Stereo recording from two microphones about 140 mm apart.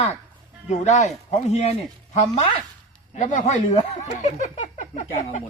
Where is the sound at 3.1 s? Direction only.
60° left (ahead or behind).